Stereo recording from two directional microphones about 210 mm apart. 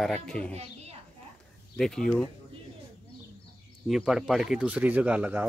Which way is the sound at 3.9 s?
Centre (ahead or behind).